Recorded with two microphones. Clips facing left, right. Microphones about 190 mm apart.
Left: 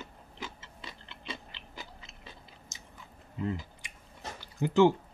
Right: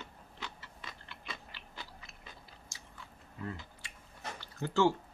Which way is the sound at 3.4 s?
20° left (ahead or behind).